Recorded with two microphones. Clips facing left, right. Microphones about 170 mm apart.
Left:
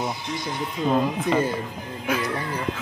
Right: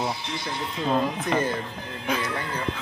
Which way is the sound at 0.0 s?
15° left (ahead or behind).